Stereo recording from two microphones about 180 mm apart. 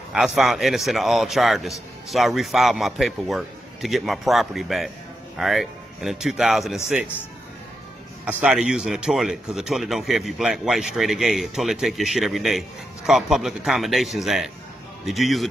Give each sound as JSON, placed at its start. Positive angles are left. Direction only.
{"t": 0.1, "sound": "speech", "side_deg": 0}
{"t": 8.3, "sound": "speech", "side_deg": -5}